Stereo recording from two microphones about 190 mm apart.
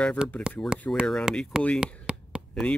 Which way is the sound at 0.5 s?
5° left (ahead or behind).